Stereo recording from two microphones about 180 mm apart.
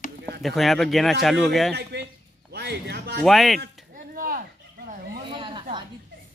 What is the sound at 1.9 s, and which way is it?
Speech, 75° right (ahead or behind).